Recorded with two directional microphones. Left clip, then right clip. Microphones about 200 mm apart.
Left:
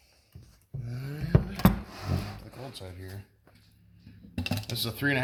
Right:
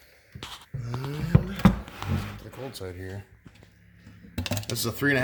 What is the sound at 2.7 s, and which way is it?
Speech, 50° right (ahead or behind).